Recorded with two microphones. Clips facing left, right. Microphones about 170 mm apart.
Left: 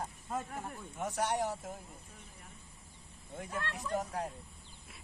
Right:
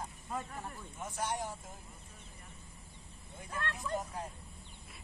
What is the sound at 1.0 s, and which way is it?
Speech, 70° left (ahead or behind).